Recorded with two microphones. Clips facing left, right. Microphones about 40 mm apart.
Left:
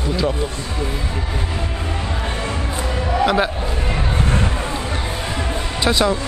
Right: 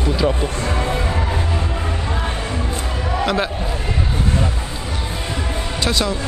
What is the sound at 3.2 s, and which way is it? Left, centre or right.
Speech, centre.